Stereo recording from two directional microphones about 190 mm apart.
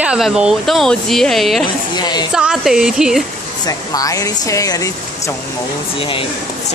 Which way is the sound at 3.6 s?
20° left (ahead or behind).